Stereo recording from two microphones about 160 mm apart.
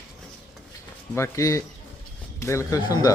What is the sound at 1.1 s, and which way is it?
Speech, 20° left (ahead or behind).